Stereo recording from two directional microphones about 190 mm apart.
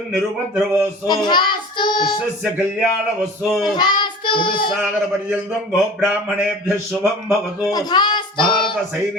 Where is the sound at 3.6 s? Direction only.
25° left (ahead or behind).